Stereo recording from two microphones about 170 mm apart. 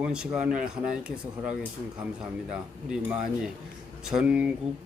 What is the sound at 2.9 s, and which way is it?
Speech, 5° right (ahead or behind).